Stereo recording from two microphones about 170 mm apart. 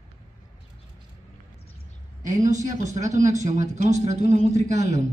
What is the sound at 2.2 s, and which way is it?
Speech, 45° right (ahead or behind).